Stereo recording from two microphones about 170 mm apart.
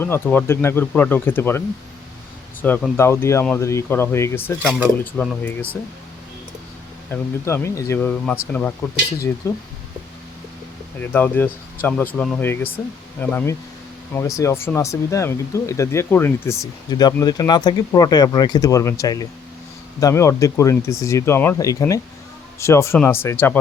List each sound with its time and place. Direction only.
0.0 s speech: 10° left (ahead or behind)
7.1 s speech: 15° left (ahead or behind)
11.1 s speech: 10° left (ahead or behind)